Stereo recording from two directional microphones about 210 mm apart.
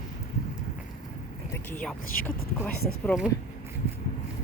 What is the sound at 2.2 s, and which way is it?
Speech, 5° left (ahead or behind).